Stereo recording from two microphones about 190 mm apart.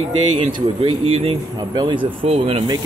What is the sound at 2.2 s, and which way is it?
Speech, 30° right (ahead or behind).